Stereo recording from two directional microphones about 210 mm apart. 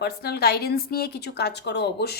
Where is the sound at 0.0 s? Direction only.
50° left (ahead or behind).